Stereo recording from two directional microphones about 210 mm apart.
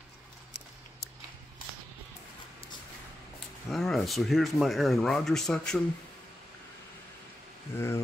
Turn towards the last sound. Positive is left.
turn(degrees=10)  # may be behind; listen again after turning